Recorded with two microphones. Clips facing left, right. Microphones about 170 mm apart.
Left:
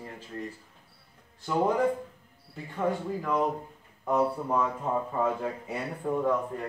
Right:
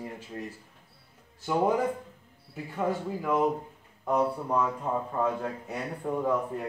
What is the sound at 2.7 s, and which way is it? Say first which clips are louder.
A man's voice: left 1 dB; 5° right (ahead or behind).